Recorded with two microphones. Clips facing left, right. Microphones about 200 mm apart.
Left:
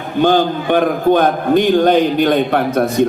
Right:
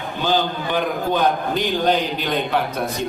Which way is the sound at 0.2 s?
55° left (ahead or behind).